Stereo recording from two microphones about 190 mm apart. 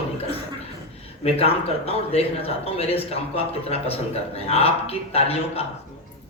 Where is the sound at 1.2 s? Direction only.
30° left (ahead or behind).